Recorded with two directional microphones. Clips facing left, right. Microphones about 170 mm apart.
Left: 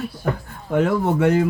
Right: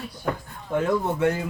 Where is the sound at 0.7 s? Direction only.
70° left (ahead or behind).